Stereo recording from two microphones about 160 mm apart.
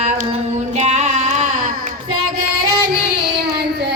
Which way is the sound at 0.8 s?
45° right (ahead or behind).